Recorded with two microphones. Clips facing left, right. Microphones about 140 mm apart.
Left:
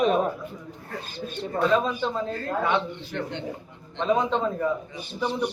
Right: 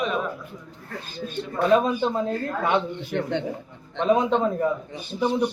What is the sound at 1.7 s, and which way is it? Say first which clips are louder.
Speech: right 7 dB; 15° right (ahead or behind).